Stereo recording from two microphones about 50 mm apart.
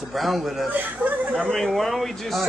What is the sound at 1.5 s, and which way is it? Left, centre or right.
Speech, centre.